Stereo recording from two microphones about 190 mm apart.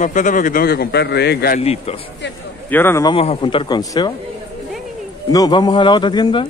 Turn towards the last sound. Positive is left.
turn(degrees=25)  # may be behind; listen again after turning